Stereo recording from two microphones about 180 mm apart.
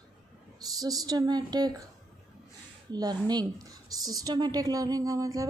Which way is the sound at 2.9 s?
20° right (ahead or behind).